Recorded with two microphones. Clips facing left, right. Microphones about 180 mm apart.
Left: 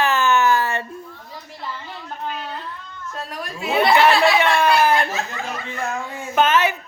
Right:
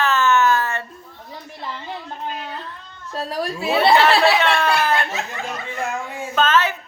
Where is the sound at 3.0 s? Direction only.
30° right (ahead or behind).